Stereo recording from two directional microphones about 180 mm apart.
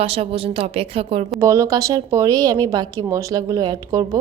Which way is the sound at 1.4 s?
15° right (ahead or behind).